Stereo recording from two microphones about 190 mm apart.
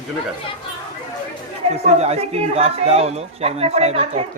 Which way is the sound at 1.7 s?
35° right (ahead or behind).